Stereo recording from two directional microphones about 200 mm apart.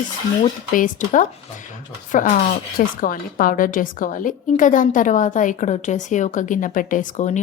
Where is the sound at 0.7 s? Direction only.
40° left (ahead or behind).